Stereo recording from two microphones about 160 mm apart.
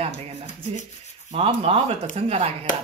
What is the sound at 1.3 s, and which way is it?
Speech, 40° right (ahead or behind).